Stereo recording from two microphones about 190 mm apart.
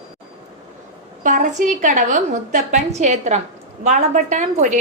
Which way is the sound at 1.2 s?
40° right (ahead or behind).